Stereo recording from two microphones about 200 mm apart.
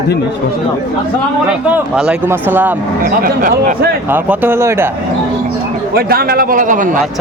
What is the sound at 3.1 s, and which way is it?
Speech, 45° right (ahead or behind).